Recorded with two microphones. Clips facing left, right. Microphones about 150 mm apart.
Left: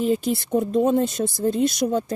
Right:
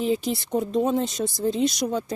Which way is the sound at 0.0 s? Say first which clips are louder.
Left 3 dB; 50° left (ahead or behind).